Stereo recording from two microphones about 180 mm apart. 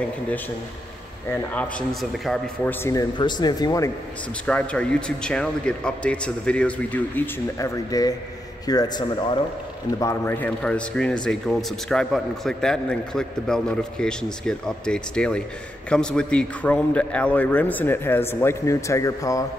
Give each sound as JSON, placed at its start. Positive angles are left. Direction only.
{"t": 1.3, "sound": "speech", "side_deg": 10}
{"t": 4.5, "sound": "a man's voice", "side_deg": 5}